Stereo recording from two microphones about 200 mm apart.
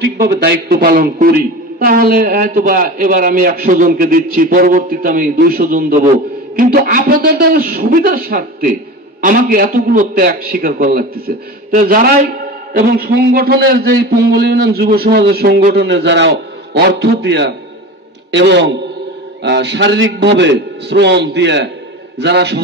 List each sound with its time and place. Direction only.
0.0 s a man's voice: 55° right (ahead or behind)